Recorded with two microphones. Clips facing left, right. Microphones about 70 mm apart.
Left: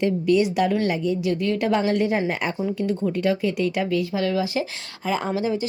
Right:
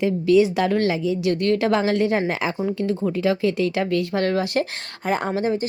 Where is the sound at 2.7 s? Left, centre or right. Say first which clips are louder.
Right 1 dB; right.